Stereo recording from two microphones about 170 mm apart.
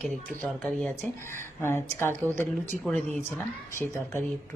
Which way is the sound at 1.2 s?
15° left (ahead or behind).